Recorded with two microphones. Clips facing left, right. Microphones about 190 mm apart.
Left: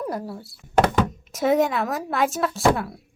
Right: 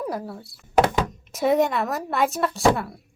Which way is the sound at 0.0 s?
Centre (ahead or behind).